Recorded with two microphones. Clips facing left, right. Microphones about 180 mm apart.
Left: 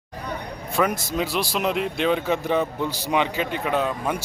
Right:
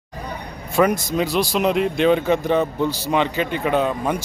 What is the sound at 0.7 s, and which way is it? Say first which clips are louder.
Speech: right 5 dB; centre (ahead or behind).